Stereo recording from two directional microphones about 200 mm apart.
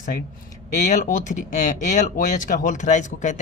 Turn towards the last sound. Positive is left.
turn(degrees=40)  # may be behind; listen again after turning